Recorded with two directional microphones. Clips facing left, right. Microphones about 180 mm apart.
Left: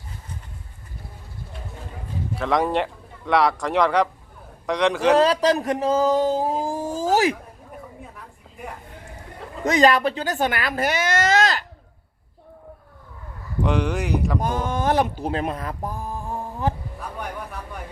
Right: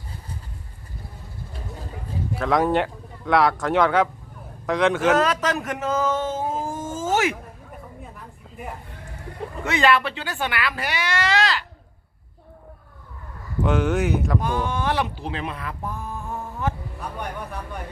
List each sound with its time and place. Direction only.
2.3 s speech: centre (ahead or behind)
5.1 s speech: 35° left (ahead or behind)
8.1 s a sound: centre (ahead or behind)
9.6 s speech: 40° left (ahead or behind)
13.6 s speech: centre (ahead or behind)
14.3 s speech: 45° left (ahead or behind)